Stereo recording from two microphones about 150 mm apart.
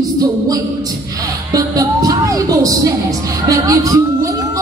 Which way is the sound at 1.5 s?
25° right (ahead or behind).